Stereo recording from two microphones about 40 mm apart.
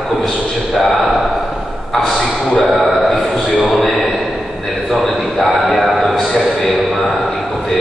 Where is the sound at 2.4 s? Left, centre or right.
Centre.